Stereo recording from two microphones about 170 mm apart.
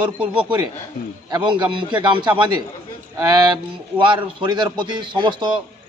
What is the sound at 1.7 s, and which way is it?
Speech, 25° right (ahead or behind).